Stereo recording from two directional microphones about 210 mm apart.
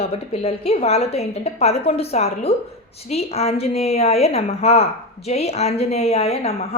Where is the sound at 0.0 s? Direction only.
30° left (ahead or behind).